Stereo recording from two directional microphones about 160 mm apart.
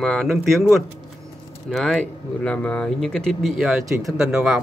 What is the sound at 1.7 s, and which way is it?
A man's voice, 5° left (ahead or behind).